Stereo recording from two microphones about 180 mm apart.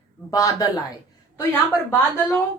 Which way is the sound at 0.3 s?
20° left (ahead or behind).